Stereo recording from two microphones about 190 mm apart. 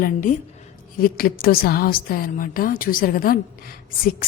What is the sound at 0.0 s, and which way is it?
A woman's voice, 45° left (ahead or behind).